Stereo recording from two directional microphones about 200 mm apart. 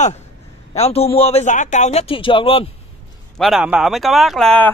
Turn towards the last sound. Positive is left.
turn(degrees=5)  # may be behind; listen again after turning